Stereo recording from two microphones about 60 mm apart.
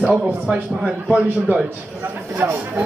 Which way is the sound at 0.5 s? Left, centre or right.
Centre.